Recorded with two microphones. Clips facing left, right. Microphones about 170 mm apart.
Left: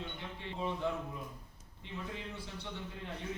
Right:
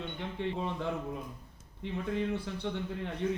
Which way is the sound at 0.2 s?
60° right (ahead or behind).